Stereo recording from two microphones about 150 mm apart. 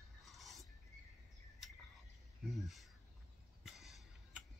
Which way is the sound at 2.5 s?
Centre (ahead or behind).